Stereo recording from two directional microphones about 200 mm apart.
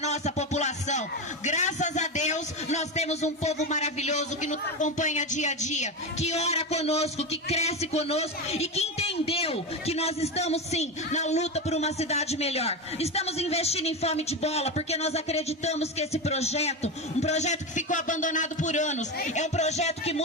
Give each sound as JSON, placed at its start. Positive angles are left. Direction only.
{"t": 0.0, "sound": "a man's voice", "side_deg": 35}